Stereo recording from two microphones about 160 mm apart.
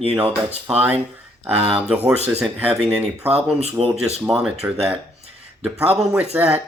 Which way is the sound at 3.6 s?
40° right (ahead or behind).